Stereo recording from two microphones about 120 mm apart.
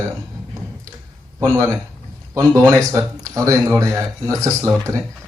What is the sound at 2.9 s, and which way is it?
A man's voice, 25° right (ahead or behind).